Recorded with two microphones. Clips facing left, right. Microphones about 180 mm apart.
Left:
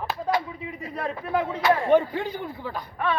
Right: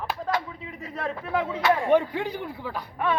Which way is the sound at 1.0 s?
Centre (ahead or behind).